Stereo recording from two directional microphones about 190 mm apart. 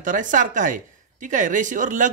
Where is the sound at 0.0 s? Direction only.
45° right (ahead or behind).